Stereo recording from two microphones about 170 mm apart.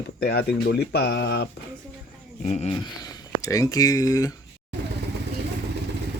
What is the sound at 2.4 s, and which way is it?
Speech, 40° left (ahead or behind).